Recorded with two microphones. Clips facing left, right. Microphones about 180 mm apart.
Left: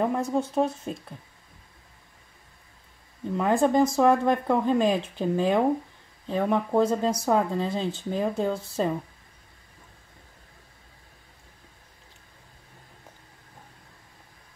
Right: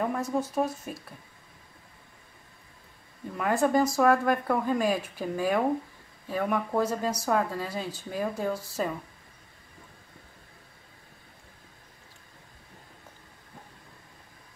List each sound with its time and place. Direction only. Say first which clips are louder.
0.0 s speech: left 3 dB; 25° left (ahead or behind)
3.3 s speech: left 3 dB; 25° left (ahead or behind)